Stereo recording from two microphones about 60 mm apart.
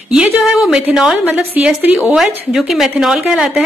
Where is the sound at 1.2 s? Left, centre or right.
Right.